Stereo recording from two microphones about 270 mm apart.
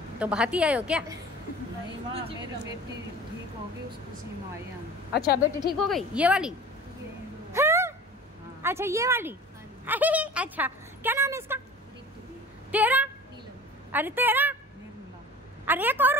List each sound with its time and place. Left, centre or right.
0.2 s a woman's voice: centre
5.1 s a woman's voice: left
5.7 s a woman's voice: centre
7.5 s a sound: centre
8.6 s a woman's voice: centre
12.7 s a woman's voice: centre
15.6 s a woman's voice: centre